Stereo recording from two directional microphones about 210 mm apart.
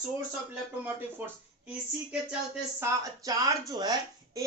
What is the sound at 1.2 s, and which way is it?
Speech, 10° right (ahead or behind).